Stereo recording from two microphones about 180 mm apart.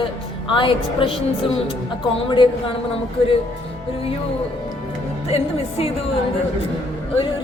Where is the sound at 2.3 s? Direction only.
30° left (ahead or behind).